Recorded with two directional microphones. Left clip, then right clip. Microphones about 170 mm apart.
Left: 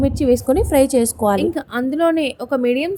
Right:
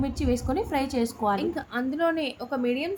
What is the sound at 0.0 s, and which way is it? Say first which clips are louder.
A woman's voice: left 12 dB; 40° left (ahead or behind).